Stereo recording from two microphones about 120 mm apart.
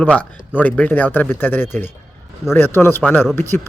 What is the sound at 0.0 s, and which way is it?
A man's voice, 15° left (ahead or behind).